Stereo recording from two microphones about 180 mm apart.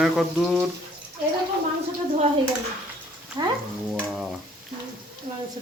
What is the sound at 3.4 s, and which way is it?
Stir, 25° right (ahead or behind).